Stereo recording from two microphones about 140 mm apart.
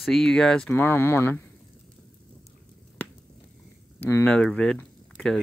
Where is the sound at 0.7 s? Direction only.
15° left (ahead or behind).